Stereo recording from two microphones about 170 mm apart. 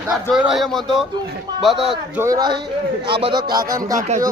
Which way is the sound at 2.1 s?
20° right (ahead or behind).